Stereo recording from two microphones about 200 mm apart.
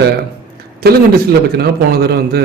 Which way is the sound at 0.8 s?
50° right (ahead or behind).